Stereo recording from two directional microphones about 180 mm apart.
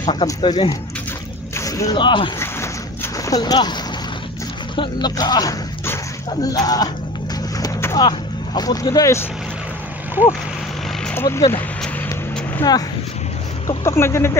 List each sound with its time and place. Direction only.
0.1 s speech: 25° left (ahead or behind)
4.7 s speech: 25° left (ahead or behind)
7.6 s vehicle: 20° left (ahead or behind)
11.1 s speech: 15° left (ahead or behind)
12.6 s speech: 15° left (ahead or behind)